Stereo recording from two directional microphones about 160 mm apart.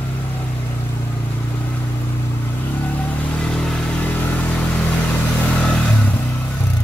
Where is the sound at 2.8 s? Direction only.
10° left (ahead or behind).